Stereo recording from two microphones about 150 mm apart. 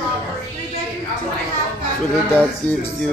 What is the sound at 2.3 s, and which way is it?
Speech, 10° left (ahead or behind).